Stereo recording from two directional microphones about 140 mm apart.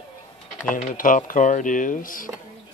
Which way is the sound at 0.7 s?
75° left (ahead or behind).